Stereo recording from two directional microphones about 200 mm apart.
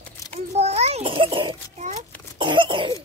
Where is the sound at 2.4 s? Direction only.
25° right (ahead or behind).